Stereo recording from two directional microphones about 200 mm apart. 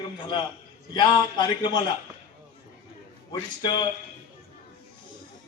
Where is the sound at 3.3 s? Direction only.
25° left (ahead or behind).